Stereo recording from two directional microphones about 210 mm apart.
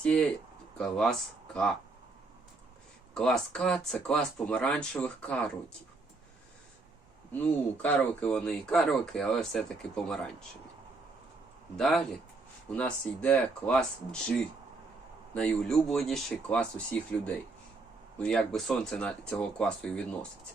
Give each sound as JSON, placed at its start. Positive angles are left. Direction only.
{"t": 0.0, "sound": "speech", "side_deg": 5}
{"t": 3.2, "sound": "speech", "side_deg": 5}
{"t": 7.3, "sound": "speech", "side_deg": 5}
{"t": 11.8, "sound": "speech", "side_deg": 0}